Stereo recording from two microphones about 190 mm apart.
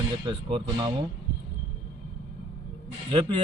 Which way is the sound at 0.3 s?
25° right (ahead or behind).